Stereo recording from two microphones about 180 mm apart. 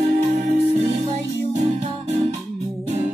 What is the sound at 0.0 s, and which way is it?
Music, 40° right (ahead or behind).